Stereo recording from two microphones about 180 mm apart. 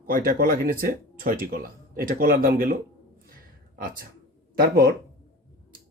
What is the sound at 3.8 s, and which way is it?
Speech, 55° right (ahead or behind).